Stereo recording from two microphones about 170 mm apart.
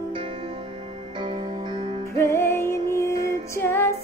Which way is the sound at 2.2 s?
15° left (ahead or behind).